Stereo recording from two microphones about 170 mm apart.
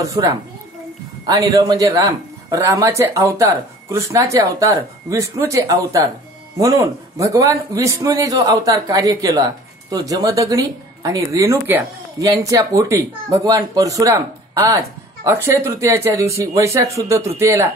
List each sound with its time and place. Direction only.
0.0 s a man's voice: 20° right (ahead or behind)